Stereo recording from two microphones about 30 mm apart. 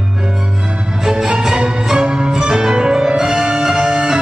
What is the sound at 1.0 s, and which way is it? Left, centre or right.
Music, centre.